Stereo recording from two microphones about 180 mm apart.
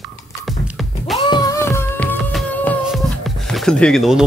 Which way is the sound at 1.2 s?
20° left (ahead or behind).